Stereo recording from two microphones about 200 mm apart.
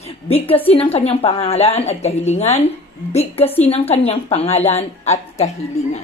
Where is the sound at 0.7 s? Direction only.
30° left (ahead or behind).